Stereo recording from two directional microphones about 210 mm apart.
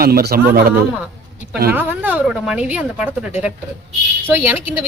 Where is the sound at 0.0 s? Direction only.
45° right (ahead or behind).